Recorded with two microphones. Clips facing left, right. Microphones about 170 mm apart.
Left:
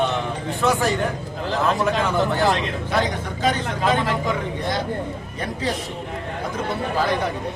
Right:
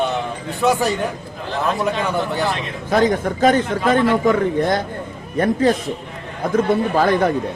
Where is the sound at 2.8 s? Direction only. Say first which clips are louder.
Right 10 dB; 45° right (ahead or behind).